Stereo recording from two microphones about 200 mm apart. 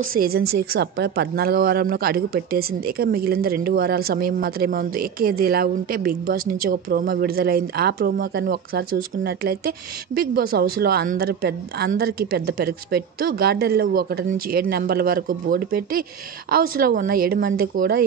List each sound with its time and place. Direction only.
0.1 s a woman's voice: 50° right (ahead or behind)